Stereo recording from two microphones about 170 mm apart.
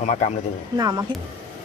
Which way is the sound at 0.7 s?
20° right (ahead or behind).